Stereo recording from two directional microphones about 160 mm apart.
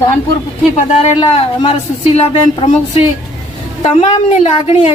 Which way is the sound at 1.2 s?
35° left (ahead or behind).